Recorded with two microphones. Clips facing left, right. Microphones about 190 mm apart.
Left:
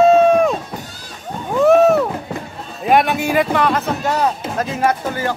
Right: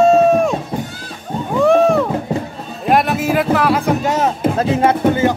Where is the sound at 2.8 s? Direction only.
Centre (ahead or behind); by 4.3 s 20° right (ahead or behind).